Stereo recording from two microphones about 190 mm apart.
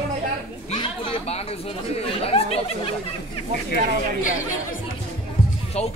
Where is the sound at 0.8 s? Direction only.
30° left (ahead or behind).